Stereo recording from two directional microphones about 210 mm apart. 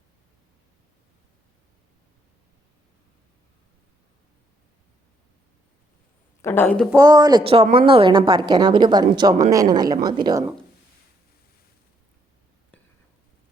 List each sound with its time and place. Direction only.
6.4 s speech: 10° left (ahead or behind)
6.9 s a woman's voice: 15° right (ahead or behind)